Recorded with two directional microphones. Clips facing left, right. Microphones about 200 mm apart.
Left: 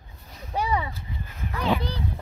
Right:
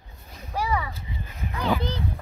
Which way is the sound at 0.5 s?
20° left (ahead or behind).